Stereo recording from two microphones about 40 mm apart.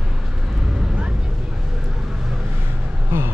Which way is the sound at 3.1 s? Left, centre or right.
Right.